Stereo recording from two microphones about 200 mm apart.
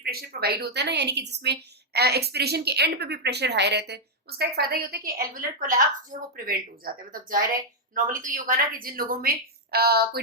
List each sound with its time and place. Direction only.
0.0 s a woman's voice: 50° right (ahead or behind)